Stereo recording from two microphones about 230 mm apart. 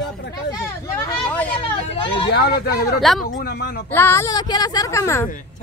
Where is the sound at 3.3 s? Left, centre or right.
Left.